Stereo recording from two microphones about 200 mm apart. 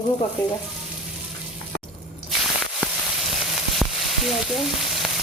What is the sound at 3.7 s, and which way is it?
Frying, centre (ahead or behind).